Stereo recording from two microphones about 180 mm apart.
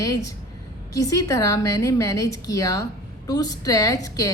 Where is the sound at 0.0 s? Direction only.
20° left (ahead or behind).